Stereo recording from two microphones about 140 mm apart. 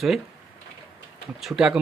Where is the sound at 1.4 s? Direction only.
5° right (ahead or behind).